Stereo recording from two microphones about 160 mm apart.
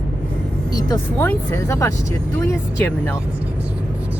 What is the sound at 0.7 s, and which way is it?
Speech, 25° left (ahead or behind).